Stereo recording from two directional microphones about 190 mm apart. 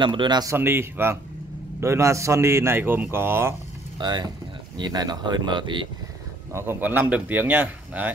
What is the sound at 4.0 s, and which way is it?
Speech, 20° right (ahead or behind).